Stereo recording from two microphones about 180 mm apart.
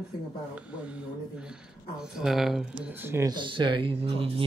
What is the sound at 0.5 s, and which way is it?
Speech, 5° right (ahead or behind).